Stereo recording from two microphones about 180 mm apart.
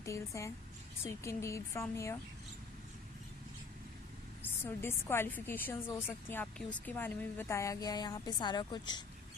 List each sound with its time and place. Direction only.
0.0 s a woman's voice: 15° left (ahead or behind)
4.6 s a woman's voice: 15° left (ahead or behind)